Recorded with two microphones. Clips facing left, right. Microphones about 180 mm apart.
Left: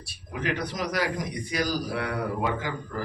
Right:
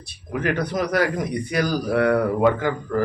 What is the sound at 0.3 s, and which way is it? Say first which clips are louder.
A man's voice: right 7 dB; 55° right (ahead or behind).